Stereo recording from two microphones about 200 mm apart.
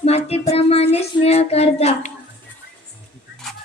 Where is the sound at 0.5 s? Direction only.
30° left (ahead or behind).